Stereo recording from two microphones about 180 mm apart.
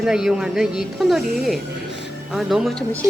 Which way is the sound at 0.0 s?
5° right (ahead or behind).